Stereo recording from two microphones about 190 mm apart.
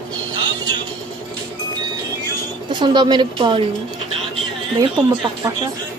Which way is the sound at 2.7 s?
25° right (ahead or behind).